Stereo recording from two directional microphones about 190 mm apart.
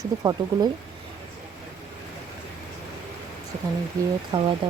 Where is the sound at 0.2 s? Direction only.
20° right (ahead or behind).